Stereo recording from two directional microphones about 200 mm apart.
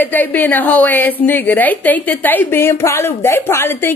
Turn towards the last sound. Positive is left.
turn(degrees=10)  # may be behind; listen again after turning